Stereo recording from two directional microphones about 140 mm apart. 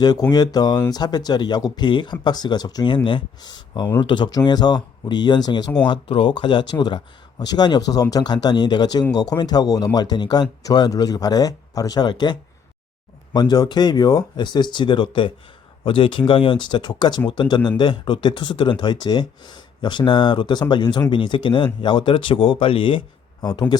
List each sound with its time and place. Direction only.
0.0 s speech: 30° left (ahead or behind)